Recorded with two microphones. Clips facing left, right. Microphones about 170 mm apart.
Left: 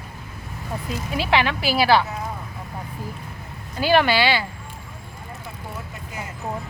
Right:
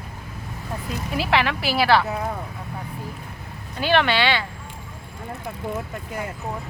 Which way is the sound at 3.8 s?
5° left (ahead or behind).